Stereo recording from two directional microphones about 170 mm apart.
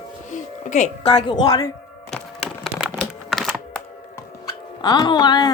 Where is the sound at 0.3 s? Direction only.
45° left (ahead or behind).